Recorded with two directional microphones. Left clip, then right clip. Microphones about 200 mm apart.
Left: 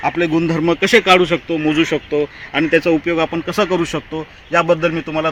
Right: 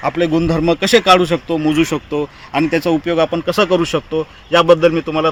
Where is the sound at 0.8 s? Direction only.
85° right.